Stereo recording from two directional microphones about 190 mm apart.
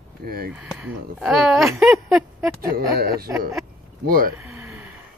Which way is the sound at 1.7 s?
5° right (ahead or behind).